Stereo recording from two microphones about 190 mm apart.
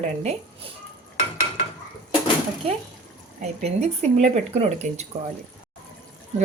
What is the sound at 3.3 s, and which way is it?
Speech, 35° right (ahead or behind).